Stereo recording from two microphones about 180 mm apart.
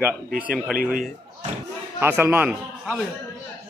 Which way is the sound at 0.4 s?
5° right (ahead or behind).